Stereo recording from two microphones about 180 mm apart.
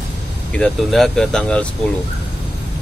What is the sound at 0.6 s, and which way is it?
Speech, centre (ahead or behind).